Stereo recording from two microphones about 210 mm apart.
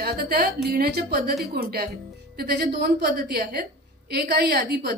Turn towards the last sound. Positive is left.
turn(degrees=-50)  # may be behind; listen again after turning